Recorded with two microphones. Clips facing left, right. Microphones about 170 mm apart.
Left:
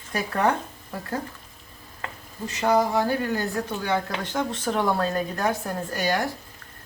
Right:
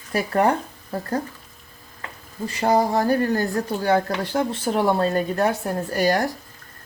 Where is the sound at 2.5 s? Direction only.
35° right (ahead or behind).